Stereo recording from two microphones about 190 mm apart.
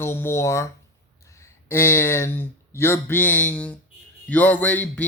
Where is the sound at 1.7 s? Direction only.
15° left (ahead or behind).